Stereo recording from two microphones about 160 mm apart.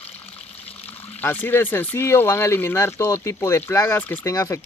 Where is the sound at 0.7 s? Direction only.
10° left (ahead or behind).